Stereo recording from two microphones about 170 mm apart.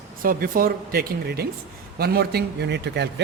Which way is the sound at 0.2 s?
55° right (ahead or behind).